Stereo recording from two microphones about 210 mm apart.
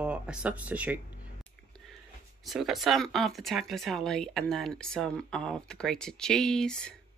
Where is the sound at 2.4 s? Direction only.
Centre (ahead or behind).